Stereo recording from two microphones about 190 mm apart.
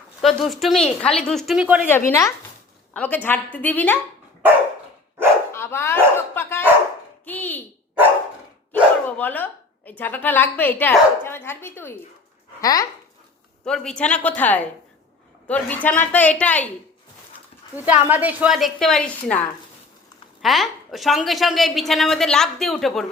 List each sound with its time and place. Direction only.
0.2 s a woman's voice: centre (ahead or behind)
1.9 s a woman's voice: 10° left (ahead or behind)
5.5 s dog: 15° left (ahead or behind)
7.3 s a sound: 10° left (ahead or behind)
8.7 s dog: 10° left (ahead or behind)
10.0 s a woman's voice: 10° left (ahead or behind)
13.7 s a woman's voice: 5° left (ahead or behind)
17.7 s a woman's voice: 10° right (ahead or behind)
20.4 s a woman's voice: centre (ahead or behind)